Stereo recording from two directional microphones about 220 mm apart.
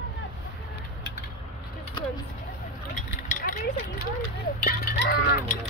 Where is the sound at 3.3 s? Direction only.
40° left (ahead or behind).